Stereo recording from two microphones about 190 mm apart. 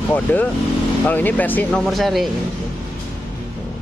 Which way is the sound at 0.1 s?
10° left (ahead or behind).